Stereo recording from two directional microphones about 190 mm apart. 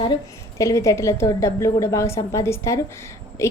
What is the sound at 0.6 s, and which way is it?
A woman's voice, 15° left (ahead or behind).